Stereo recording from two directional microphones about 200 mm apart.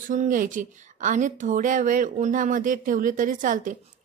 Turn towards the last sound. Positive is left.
turn(degrees=-40)  # may be behind; listen again after turning